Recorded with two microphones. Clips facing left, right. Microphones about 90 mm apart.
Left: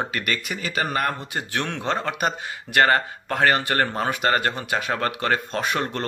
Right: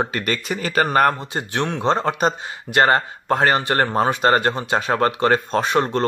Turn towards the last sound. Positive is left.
turn(degrees=-30)  # may be behind; listen again after turning